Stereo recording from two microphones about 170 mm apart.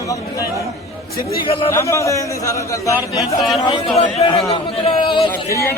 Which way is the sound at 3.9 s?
35° left (ahead or behind).